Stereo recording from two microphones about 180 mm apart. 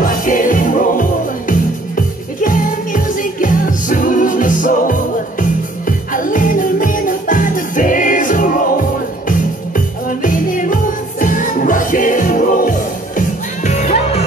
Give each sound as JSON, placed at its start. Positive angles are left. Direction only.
{"t": 0.0, "sound": "music", "side_deg": 50}